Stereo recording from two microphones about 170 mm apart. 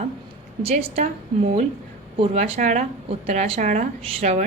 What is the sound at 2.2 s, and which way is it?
A woman's voice, 35° right (ahead or behind).